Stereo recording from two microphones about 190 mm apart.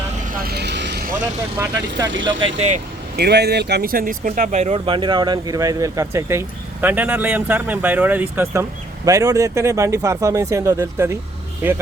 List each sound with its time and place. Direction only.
0.4 s vehicle: 60° right (ahead or behind)
1.5 s speech: 15° right (ahead or behind)
2.6 s speech: 35° right (ahead or behind)
3.2 s speech: 60° right (ahead or behind); by 11.8 s 10° right (ahead or behind)